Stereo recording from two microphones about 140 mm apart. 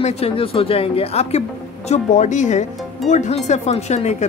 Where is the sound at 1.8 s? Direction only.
60° left (ahead or behind).